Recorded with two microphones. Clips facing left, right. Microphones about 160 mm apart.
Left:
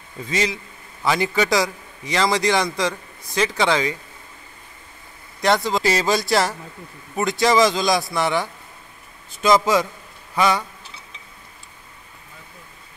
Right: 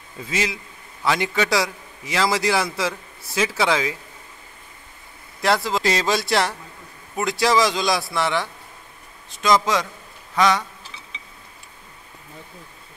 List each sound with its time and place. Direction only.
0.3 s a man's voice: 5° right (ahead or behind)
5.4 s a man's voice: centre (ahead or behind)